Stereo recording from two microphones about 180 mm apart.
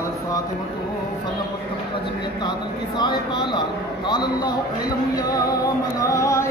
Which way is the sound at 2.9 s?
25° left (ahead or behind).